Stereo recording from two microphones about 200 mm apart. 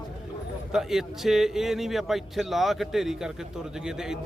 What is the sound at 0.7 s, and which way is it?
Speech, centre (ahead or behind).